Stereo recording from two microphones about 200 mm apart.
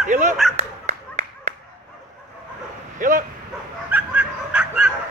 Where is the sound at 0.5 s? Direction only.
35° right (ahead or behind).